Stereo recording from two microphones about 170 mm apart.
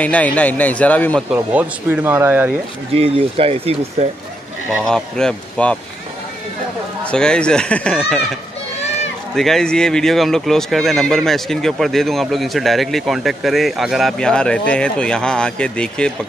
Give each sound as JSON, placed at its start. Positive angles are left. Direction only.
{"t": 0.0, "sound": "a man's voice", "side_deg": 10}
{"t": 1.3, "sound": "speech", "side_deg": -10}
{"t": 3.0, "sound": "speech", "side_deg": -35}
{"t": 4.8, "sound": "speech", "side_deg": 5}
{"t": 7.1, "sound": "speech", "side_deg": 5}
{"t": 9.3, "sound": "speech", "side_deg": 0}